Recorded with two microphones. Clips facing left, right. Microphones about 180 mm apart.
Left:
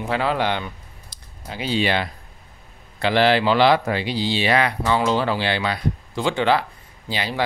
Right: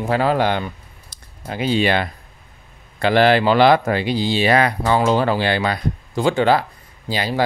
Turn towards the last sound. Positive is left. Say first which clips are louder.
# right 4 dB
turn(degrees=-40)  # may be behind; listen again after turning